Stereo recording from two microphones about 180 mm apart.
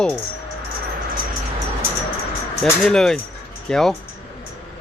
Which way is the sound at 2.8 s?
5° left (ahead or behind).